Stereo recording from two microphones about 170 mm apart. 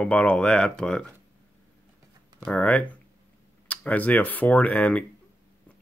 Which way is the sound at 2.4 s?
10° left (ahead or behind).